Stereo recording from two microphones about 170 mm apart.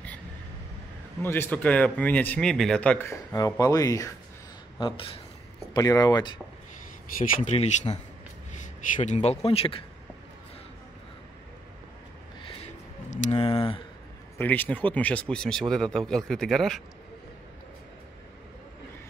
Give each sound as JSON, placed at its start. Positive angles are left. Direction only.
{"t": 1.2, "sound": "speech", "side_deg": 15}
{"t": 4.7, "sound": "speech", "side_deg": 30}
{"t": 7.2, "sound": "speech", "side_deg": 55}
{"t": 7.5, "sound": "a man's voice", "side_deg": 35}
{"t": 13.1, "sound": "speech", "side_deg": 45}
{"t": 13.4, "sound": "speech", "side_deg": 30}
{"t": 14.4, "sound": "speech", "side_deg": 10}